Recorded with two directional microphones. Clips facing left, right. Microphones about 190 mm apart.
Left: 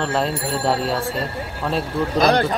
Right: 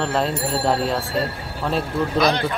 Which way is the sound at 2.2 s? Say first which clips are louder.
Left 4 dB; 45° left (ahead or behind).